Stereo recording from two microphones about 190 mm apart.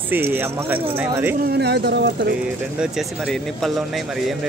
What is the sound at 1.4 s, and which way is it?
Speech, 60° right (ahead or behind).